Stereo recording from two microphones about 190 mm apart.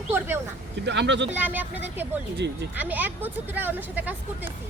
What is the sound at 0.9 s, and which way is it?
Speech, 65° right (ahead or behind).